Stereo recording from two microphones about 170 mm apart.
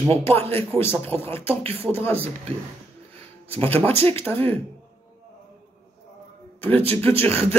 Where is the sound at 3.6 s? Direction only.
10° left (ahead or behind).